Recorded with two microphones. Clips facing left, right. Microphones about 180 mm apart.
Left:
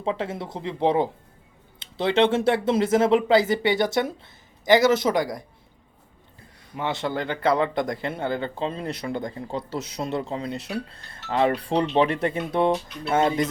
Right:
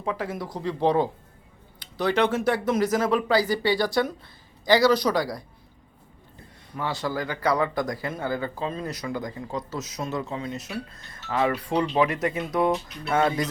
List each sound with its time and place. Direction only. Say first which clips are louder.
0.0 s speech: left 2 dB; 25° left (ahead or behind)
6.7 s speech: left 2 dB; 25° left (ahead or behind)